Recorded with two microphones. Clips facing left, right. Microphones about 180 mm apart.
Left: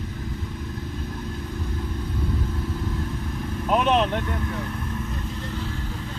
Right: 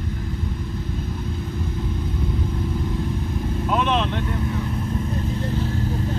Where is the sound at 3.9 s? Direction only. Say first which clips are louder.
Left 2 dB; 40° left (ahead or behind).